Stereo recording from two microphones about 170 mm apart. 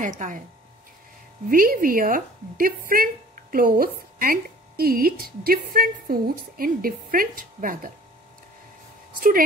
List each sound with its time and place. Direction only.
0.2 s speech: 45° right (ahead or behind)
1.5 s speech: 55° right (ahead or behind)